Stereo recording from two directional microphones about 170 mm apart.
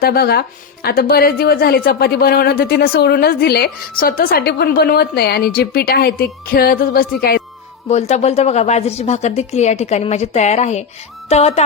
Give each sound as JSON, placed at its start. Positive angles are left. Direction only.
{"t": 0.0, "sound": "a woman's voice", "side_deg": 65}
{"t": 7.9, "sound": "a woman's voice", "side_deg": 40}